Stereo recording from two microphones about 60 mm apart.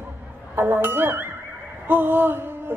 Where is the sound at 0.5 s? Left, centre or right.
Right.